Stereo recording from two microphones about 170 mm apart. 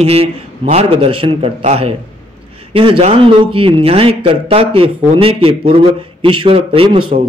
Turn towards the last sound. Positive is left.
turn(degrees=-30)  # may be behind; listen again after turning